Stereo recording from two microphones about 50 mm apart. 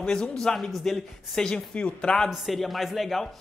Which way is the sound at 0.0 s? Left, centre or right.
Centre.